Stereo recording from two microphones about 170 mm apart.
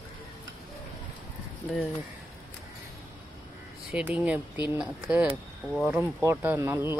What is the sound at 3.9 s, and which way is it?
Speech, 10° right (ahead or behind).